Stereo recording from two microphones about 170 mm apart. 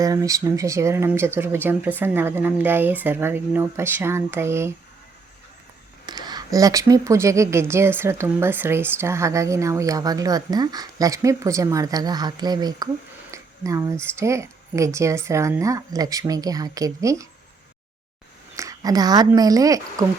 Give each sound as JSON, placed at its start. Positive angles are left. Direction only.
{"t": 0.0, "sound": "speech", "side_deg": -20}
{"t": 6.1, "sound": "a woman's voice", "side_deg": -25}
{"t": 18.5, "sound": "a sound", "side_deg": -20}
{"t": 19.3, "sound": "a woman's voice", "side_deg": -20}